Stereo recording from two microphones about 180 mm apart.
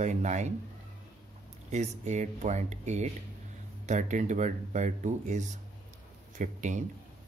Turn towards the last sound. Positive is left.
turn(degrees=-45)  # may be behind; listen again after turning